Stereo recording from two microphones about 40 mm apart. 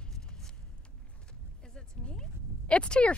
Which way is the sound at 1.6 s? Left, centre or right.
Centre.